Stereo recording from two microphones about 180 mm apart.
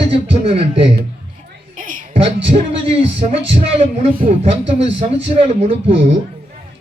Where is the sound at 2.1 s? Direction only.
35° right (ahead or behind).